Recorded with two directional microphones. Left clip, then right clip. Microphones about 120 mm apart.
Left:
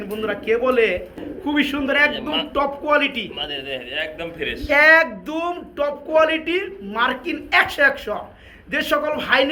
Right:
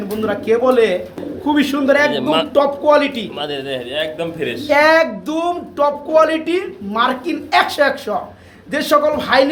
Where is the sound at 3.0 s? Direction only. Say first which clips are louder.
Right 3 dB; 90° right.